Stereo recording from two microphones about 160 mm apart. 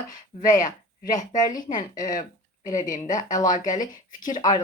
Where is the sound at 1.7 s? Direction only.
55° left (ahead or behind).